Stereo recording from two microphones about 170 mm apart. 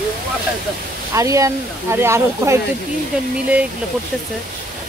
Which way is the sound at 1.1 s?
20° right (ahead or behind).